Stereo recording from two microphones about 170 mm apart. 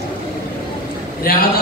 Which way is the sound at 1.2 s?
60° left (ahead or behind).